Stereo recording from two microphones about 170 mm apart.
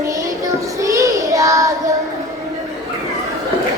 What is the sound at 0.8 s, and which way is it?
Child singing, 20° right (ahead or behind).